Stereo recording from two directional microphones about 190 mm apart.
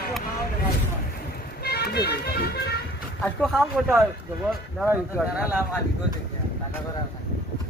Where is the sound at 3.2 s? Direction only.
5° left (ahead or behind).